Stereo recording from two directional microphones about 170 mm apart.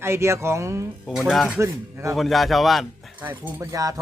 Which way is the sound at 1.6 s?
15° right (ahead or behind).